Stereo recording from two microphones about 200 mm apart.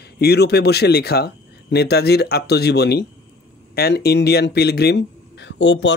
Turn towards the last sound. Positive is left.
turn(degrees=65)  # may be behind; listen again after turning